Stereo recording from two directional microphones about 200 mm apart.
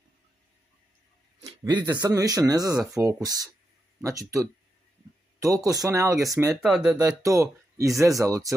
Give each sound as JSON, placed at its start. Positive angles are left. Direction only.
{"t": 1.4, "sound": "speech", "side_deg": -20}
{"t": 6.5, "sound": "speech", "side_deg": 0}
{"t": 7.0, "sound": "speech", "side_deg": -15}